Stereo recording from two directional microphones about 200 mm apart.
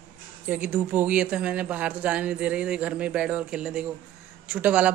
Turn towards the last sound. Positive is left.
turn(degrees=-5)  # may be behind; listen again after turning